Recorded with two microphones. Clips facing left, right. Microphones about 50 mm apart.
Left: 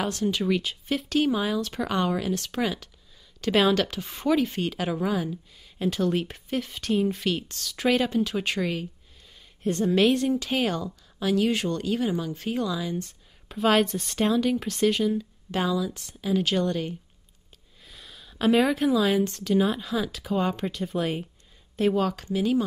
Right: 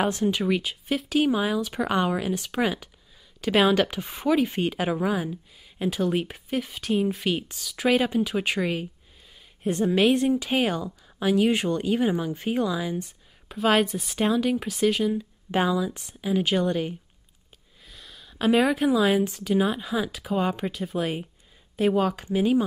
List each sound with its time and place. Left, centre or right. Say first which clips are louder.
0.0 s a woman's voice: right 2 dB; right; by 15.2 s centre
15.5 s speech: right 2 dB; right
17.8 s a woman's voice: even; centre